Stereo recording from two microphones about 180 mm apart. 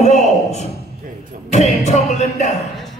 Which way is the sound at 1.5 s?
40° left (ahead or behind).